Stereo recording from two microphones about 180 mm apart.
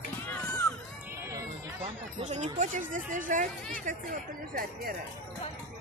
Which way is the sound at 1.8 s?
40° right (ahead or behind).